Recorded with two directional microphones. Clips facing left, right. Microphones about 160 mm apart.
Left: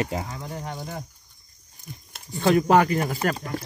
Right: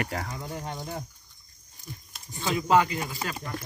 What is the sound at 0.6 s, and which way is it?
Speech, centre (ahead or behind).